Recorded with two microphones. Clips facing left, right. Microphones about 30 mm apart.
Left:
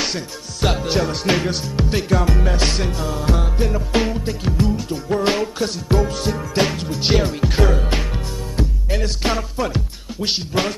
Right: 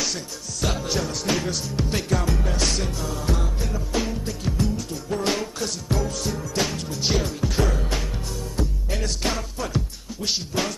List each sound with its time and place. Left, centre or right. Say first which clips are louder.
0.0 s music: left 4 dB; left
1.9 s music: left 6 dB; left
2.3 s music: left 4 dB; left
4.1 s music: left 5 dB; left